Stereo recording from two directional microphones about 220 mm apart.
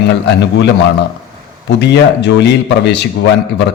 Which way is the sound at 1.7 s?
50° left (ahead or behind).